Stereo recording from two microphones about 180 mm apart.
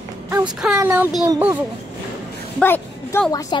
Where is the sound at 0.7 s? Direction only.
10° right (ahead or behind).